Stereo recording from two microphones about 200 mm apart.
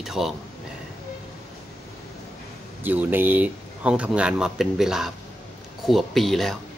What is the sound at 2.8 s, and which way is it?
Speech, 10° right (ahead or behind).